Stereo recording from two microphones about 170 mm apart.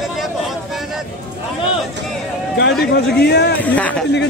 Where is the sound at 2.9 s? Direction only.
75° left (ahead or behind).